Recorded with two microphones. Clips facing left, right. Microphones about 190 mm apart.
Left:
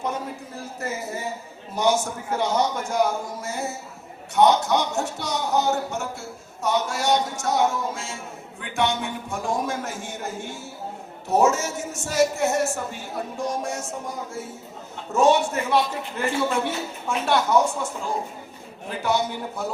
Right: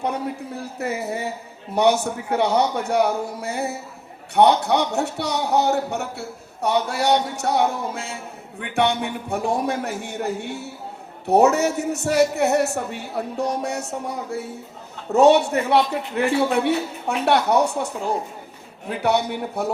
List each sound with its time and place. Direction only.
0.0 s speech: 65° right (ahead or behind)